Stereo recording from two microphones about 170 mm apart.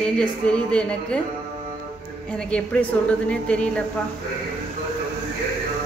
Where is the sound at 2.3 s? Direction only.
10° left (ahead or behind).